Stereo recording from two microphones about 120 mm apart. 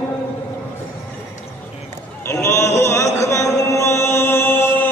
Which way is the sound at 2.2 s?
20° left (ahead or behind).